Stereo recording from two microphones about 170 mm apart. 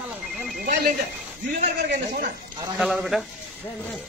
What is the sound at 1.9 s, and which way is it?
Speech, 55° right (ahead or behind).